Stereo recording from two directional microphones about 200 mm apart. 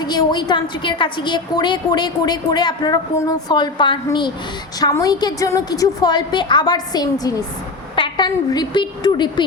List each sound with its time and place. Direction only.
0.0 s a woman's voice: 20° left (ahead or behind)